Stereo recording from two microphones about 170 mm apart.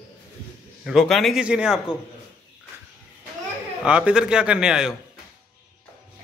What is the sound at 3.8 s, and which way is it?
A man's voice, 5° right (ahead or behind).